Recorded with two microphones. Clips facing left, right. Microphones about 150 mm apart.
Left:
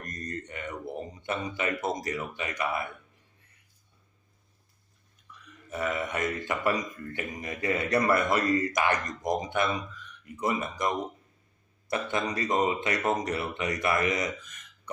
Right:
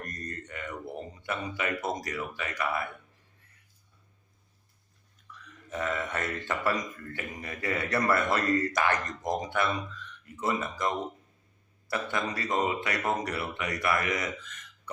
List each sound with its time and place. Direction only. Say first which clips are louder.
0.0 s a man's voice: left 2 dB; 20° left (ahead or behind)
5.3 s a sound: right 2 dB; 15° left (ahead or behind)
5.7 s speech: left 1 dB; 10° left (ahead or behind)